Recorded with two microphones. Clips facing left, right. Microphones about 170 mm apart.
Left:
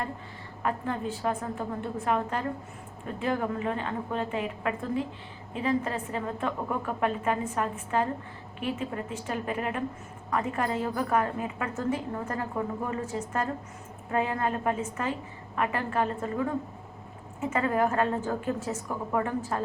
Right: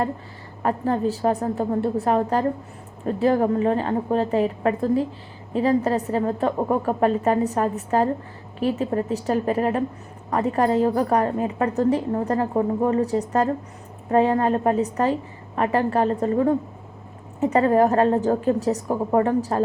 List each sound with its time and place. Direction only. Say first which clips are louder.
0.6 s a woman's voice: right 8 dB; 40° right (ahead or behind)